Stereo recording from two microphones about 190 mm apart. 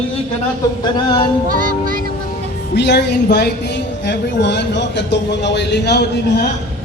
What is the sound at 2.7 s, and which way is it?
A woman's voice, 60° left (ahead or behind).